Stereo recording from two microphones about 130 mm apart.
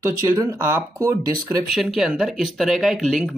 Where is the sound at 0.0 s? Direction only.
25° right (ahead or behind).